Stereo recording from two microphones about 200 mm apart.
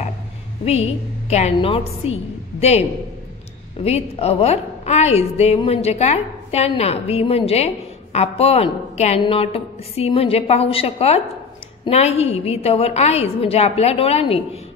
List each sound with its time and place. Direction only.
0.7 s a woman's voice: 30° left (ahead or behind)
3.8 s a woman's voice: 30° left (ahead or behind)